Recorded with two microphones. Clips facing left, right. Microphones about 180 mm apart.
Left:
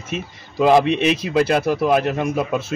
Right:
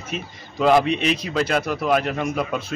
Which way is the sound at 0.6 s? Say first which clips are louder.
Left 3 dB; 20° left (ahead or behind).